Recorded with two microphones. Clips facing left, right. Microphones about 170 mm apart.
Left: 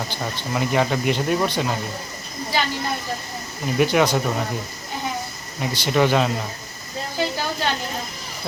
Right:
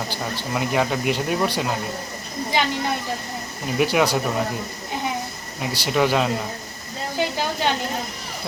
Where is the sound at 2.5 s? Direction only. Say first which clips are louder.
Right 1 dB; 15° right (ahead or behind).